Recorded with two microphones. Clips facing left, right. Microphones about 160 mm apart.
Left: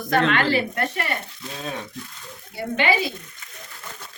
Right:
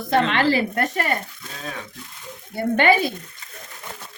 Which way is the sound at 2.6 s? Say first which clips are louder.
Right 4 dB; 50° right (ahead or behind).